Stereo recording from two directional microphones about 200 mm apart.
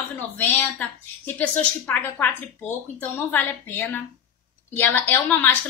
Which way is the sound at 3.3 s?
10° left (ahead or behind).